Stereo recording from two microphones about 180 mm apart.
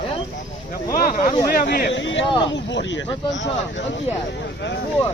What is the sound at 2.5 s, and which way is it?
Speech, 90° left.